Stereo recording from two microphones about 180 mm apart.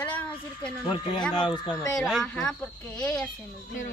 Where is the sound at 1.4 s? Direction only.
20° left (ahead or behind).